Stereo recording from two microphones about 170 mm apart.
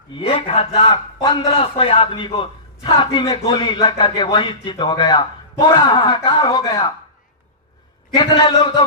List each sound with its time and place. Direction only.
0.3 s a man's voice: 35° left (ahead or behind)
8.1 s a man's voice: 25° left (ahead or behind)